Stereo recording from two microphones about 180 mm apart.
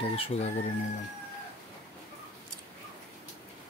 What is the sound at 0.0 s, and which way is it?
Speech, 35° left (ahead or behind).